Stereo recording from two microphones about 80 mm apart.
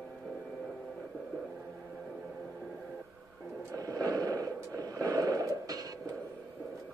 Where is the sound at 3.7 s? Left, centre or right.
Right.